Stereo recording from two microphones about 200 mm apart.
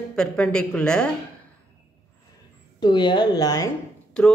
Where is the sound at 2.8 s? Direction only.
20° left (ahead or behind).